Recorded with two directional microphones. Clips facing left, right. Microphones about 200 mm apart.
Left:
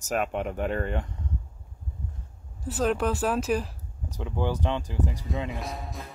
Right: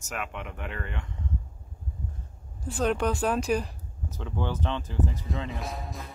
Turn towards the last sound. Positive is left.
turn(degrees=0)  # may be behind; listen again after turning